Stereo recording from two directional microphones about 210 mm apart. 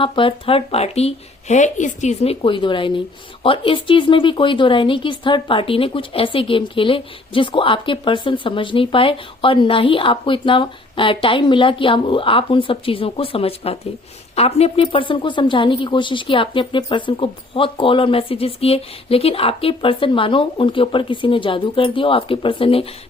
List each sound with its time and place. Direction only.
0.0 s speech: 25° left (ahead or behind)